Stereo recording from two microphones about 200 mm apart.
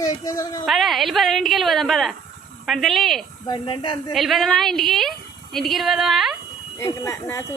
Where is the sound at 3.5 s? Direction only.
25° left (ahead or behind).